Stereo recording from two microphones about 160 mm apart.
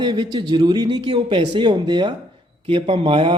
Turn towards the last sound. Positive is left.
turn(degrees=-30)  # may be behind; listen again after turning